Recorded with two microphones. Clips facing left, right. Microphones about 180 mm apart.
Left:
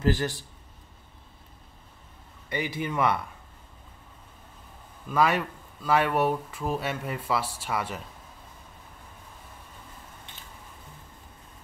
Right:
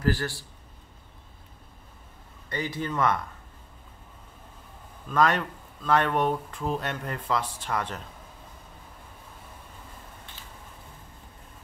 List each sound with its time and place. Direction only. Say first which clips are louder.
0.0 s a man's voice: left 1 dB; 20° left (ahead or behind)
2.5 s speech: left 1 dB; 10° left (ahead or behind)
5.1 s speech: even; 5° left (ahead or behind)